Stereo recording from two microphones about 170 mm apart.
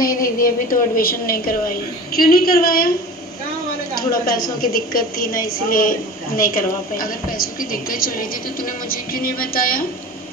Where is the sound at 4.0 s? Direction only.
60° left (ahead or behind).